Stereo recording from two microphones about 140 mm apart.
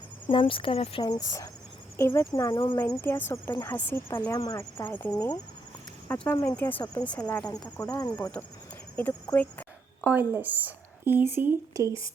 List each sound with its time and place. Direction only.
0.3 s speech: 40° left (ahead or behind)
1.0 s speech: 25° left (ahead or behind)
2.6 s speech: 35° left (ahead or behind)
2.8 s speech: 20° left (ahead or behind)
4.8 s speech: 10° left (ahead or behind)
7.0 s speech: 10° left (ahead or behind)
7.9 s speech: 25° left (ahead or behind)
9.3 s speech: 10° left (ahead or behind)
10.0 s a woman's voice: 15° right (ahead or behind)